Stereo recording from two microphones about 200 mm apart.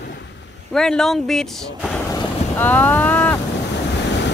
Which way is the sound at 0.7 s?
Centre (ahead or behind).